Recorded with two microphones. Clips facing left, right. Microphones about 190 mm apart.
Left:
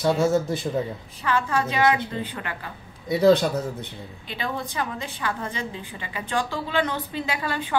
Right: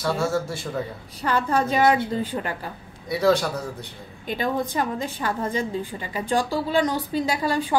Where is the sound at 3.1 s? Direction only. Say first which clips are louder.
Left 3 dB; 25° left (ahead or behind).